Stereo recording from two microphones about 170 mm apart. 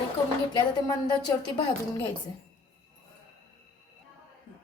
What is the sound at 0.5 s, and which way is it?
Speech, 25° left (ahead or behind).